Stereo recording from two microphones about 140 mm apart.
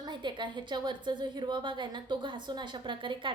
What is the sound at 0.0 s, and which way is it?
A woman's voice, 30° right (ahead or behind).